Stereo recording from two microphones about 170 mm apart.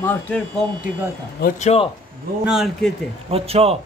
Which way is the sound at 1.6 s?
35° left (ahead or behind).